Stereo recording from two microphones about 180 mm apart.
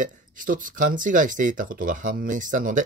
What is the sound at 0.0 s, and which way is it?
Speech, 45° right (ahead or behind).